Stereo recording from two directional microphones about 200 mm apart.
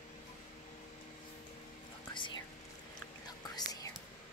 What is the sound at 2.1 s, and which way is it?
Whispering, 25° left (ahead or behind).